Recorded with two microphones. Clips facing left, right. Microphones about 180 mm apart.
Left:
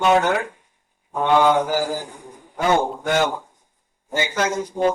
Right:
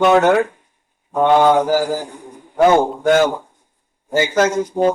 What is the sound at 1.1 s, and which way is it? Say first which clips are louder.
Speech: right 4 dB; 40° right (ahead or behind).